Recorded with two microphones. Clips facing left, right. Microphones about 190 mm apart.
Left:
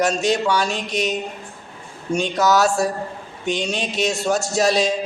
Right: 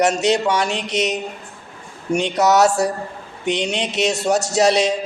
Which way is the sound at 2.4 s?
70° right (ahead or behind).